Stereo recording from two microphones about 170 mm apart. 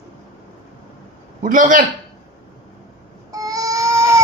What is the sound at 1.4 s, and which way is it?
Speech, 50° right (ahead or behind).